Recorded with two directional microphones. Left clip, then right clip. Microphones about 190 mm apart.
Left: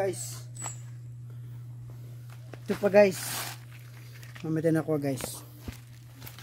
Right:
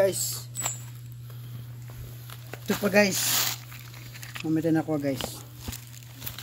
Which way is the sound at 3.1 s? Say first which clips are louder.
Right 9 dB; 20° right (ahead or behind).